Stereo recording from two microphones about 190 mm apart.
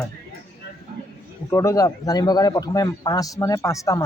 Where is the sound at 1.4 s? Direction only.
15° left (ahead or behind).